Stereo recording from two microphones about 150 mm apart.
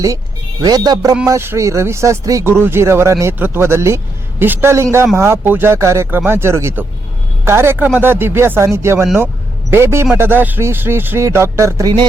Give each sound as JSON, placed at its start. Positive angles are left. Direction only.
{"t": 0.6, "sound": "speech", "side_deg": -25}